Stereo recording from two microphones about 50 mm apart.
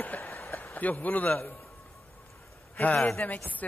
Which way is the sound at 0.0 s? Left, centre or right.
Left.